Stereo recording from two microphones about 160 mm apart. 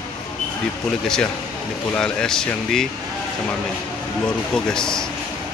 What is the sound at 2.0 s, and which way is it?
Speech, 5° left (ahead or behind).